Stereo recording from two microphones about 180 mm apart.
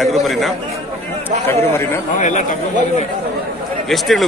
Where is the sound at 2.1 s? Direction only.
45° left (ahead or behind).